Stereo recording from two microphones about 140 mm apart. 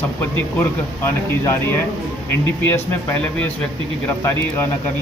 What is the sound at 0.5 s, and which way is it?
Speech, 20° left (ahead or behind).